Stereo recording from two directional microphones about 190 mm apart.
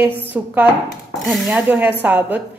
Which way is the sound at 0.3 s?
10° right (ahead or behind).